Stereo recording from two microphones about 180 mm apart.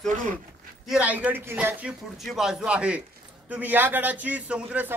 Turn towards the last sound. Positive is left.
turn(degrees=-10)  # may be behind; listen again after turning